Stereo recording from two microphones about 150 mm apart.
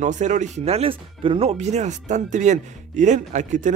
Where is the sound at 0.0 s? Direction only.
55° right (ahead or behind).